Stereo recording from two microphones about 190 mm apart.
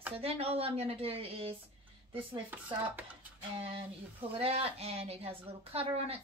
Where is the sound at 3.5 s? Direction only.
30° right (ahead or behind).